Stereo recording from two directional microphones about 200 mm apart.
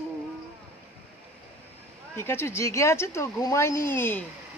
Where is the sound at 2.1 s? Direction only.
10° left (ahead or behind).